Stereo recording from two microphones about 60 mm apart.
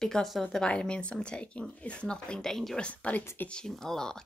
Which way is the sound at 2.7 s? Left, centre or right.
Left.